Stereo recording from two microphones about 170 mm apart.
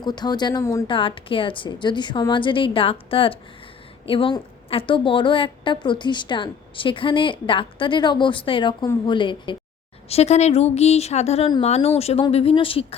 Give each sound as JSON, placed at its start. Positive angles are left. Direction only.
{"t": 0.0, "sound": "a woman's voice", "side_deg": 25}
{"t": 0.9, "sound": "a woman's voice", "side_deg": 30}
{"t": 10.1, "sound": "a woman's voice", "side_deg": 40}